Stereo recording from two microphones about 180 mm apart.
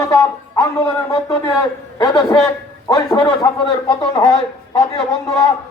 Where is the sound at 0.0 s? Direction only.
15° left (ahead or behind).